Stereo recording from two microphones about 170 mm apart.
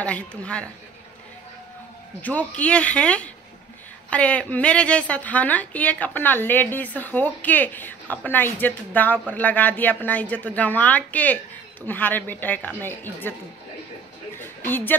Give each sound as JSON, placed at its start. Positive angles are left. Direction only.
{"t": 0.0, "sound": "a woman's voice", "side_deg": 5}
{"t": 2.2, "sound": "a woman's voice", "side_deg": 10}